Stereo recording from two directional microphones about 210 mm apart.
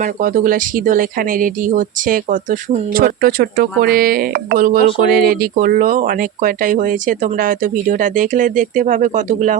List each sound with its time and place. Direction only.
0.2 s speech: 40° right (ahead or behind)